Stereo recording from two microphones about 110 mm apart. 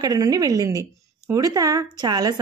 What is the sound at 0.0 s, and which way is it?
A man's voice, 35° right (ahead or behind).